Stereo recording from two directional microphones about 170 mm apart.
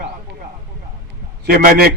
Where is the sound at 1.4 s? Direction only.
60° right (ahead or behind).